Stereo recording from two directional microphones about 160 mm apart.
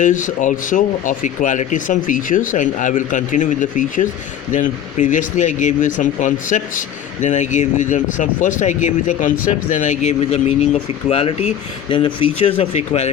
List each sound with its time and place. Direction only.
0.0 s speech: 55° left (ahead or behind)